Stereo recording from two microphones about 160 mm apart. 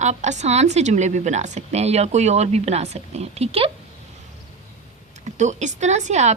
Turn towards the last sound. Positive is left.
turn(degrees=-45)  # may be behind; listen again after turning